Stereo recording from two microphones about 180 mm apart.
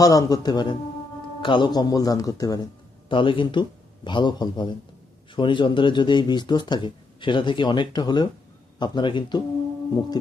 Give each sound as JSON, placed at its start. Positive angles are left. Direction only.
{"t": 0.0, "sound": "speech", "side_deg": 20}